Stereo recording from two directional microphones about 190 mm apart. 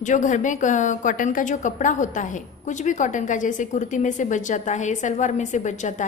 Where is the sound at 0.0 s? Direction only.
40° left (ahead or behind).